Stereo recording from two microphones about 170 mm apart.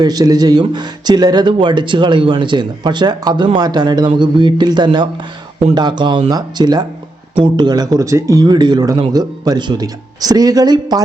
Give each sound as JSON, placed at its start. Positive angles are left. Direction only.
{"t": 0.0, "sound": "speech", "side_deg": -25}